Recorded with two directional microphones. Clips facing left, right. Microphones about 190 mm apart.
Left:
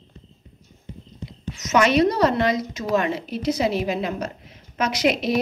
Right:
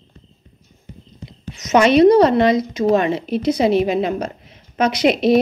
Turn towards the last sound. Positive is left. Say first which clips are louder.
# right 5 dB
turn(degrees=-25)  # may be behind; listen again after turning